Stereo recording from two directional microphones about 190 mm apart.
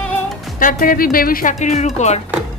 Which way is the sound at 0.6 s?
45° left (ahead or behind).